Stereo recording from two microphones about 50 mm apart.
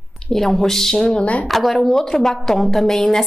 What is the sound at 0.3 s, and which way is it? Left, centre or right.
Speech, centre.